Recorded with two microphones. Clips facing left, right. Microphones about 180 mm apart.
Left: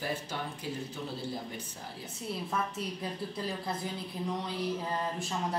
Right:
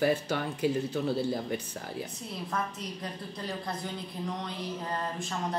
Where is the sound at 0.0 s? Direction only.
75° right (ahead or behind).